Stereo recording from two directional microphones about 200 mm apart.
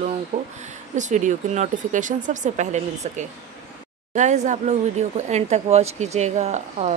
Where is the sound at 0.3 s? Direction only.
35° right (ahead or behind).